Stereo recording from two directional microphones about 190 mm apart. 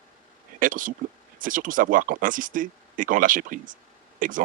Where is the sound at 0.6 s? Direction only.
45° right (ahead or behind).